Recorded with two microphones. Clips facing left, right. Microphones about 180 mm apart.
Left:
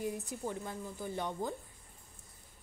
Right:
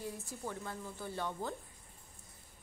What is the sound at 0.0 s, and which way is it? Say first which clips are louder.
A woman's voice: left 5 dB; 20° left (ahead or behind).